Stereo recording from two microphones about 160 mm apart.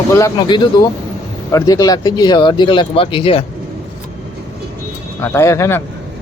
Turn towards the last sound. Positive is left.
turn(degrees=15)  # may be behind; listen again after turning